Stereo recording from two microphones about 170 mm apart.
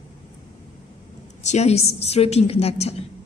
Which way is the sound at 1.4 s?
40° left (ahead or behind).